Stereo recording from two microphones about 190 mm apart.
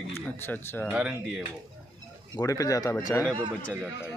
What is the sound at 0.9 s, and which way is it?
Speech, 5° right (ahead or behind).